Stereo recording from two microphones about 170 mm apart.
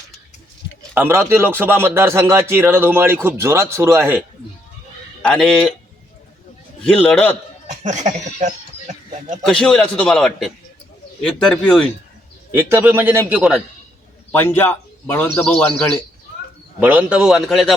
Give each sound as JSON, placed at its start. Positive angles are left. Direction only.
{"t": 0.9, "sound": "speech", "side_deg": -15}
{"t": 5.2, "sound": "a man's voice", "side_deg": 5}
{"t": 6.8, "sound": "a man's voice", "side_deg": 5}
{"t": 7.9, "sound": "speech", "side_deg": -45}
{"t": 9.4, "sound": "a man's voice", "side_deg": 5}
{"t": 12.5, "sound": "speech", "side_deg": -15}
{"t": 14.3, "sound": "a man's voice", "side_deg": 10}
{"t": 16.8, "sound": "a man's voice", "side_deg": -10}